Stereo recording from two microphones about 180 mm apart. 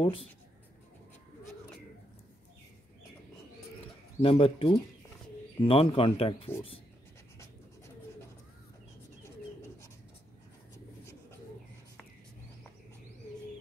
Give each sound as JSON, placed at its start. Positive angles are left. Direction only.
{"t": 0.0, "sound": "speech", "side_deg": 30}
{"t": 4.2, "sound": "speech", "side_deg": 30}